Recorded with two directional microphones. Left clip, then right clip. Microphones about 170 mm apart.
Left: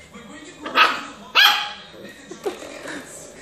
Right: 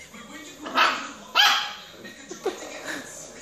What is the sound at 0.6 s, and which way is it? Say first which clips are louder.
Dog: left 5 dB; centre (ahead or behind).